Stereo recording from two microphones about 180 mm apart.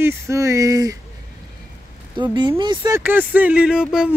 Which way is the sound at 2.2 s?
25° right (ahead or behind).